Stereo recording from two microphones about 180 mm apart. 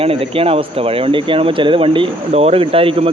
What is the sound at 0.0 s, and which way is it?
Speech, 30° right (ahead or behind).